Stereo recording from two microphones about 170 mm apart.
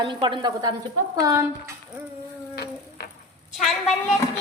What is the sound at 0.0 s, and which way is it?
A woman's voice, 30° right (ahead or behind).